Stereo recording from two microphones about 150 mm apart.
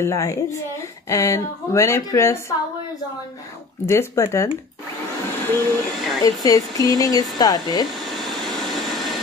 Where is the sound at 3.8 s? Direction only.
20° left (ahead or behind).